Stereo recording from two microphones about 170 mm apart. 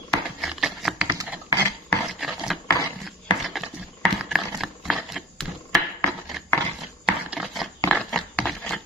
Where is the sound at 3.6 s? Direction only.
Centre (ahead or behind).